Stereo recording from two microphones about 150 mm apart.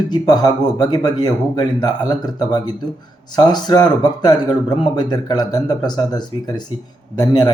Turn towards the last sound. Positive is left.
turn(degrees=25)  # may be behind; listen again after turning